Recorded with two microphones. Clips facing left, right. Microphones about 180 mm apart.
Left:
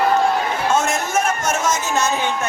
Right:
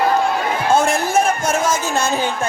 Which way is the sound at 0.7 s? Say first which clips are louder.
Right 5 dB; 30° right (ahead or behind).